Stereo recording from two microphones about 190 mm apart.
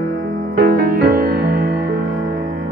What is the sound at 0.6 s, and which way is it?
Music, 50° right (ahead or behind).